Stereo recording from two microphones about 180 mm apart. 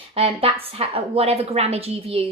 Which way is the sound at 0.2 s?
30° right (ahead or behind).